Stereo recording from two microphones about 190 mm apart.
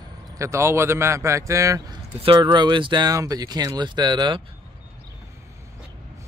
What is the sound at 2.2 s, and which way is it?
Speech, 25° right (ahead or behind).